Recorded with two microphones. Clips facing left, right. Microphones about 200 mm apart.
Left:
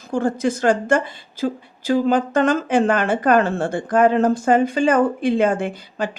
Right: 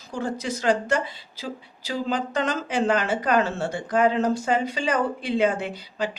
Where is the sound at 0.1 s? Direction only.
50° left (ahead or behind).